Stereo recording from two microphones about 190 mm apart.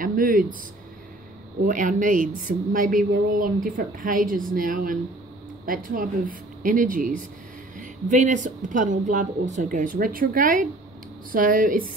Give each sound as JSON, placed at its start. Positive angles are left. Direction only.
{"t": 0.0, "sound": "speech", "side_deg": -45}
{"t": 1.6, "sound": "speech", "side_deg": -45}